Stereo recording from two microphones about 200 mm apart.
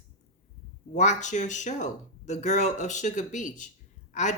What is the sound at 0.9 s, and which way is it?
Speech, 35° left (ahead or behind).